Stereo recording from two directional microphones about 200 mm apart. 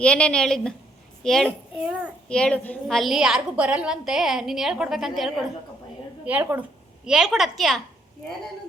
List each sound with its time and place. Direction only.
0.0 s a child's voice: 5° left (ahead or behind)